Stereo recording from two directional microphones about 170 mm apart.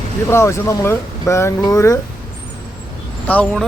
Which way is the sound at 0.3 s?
15° left (ahead or behind).